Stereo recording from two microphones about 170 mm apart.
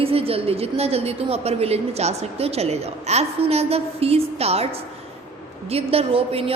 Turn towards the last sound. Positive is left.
turn(degrees=-35)  # may be behind; listen again after turning